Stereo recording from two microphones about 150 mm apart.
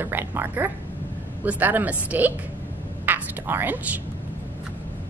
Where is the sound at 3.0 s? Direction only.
15° right (ahead or behind).